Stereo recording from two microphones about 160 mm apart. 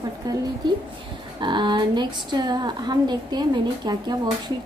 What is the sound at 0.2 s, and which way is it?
A woman's voice, 25° right (ahead or behind).